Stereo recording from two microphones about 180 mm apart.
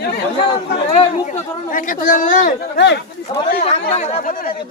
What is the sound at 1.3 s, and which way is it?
Speech, 45° left (ahead or behind).